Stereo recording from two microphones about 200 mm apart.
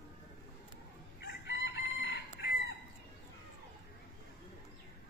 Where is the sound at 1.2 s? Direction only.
60° left (ahead or behind).